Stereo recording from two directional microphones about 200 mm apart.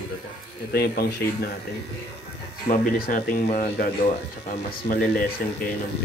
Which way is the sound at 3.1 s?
45° left (ahead or behind).